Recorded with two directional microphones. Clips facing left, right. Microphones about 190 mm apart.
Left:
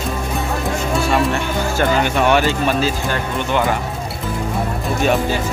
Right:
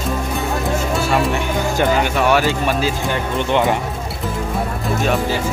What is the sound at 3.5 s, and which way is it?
Speech, 20° right (ahead or behind).